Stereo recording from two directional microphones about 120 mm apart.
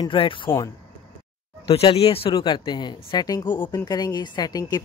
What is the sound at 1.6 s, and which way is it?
Speech, 55° left (ahead or behind).